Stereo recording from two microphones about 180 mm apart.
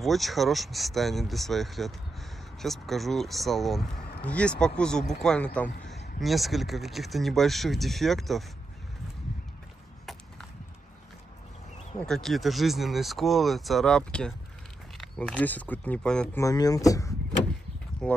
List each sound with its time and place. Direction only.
0.0 s speech: centre (ahead or behind)
12.1 s speech: centre (ahead or behind)
16.3 s speech: 20° left (ahead or behind)
18.0 s speech: 5° left (ahead or behind)